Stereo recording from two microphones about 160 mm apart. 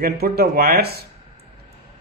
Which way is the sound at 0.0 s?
75° right (ahead or behind).